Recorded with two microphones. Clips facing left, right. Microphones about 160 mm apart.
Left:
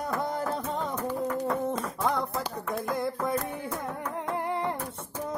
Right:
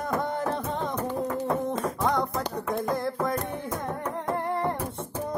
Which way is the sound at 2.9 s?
5° left (ahead or behind).